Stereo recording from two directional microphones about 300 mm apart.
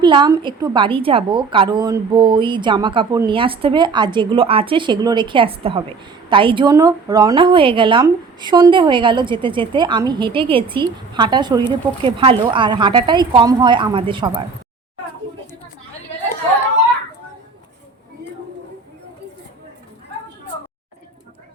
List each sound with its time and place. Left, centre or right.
0.0 s a woman's voice: centre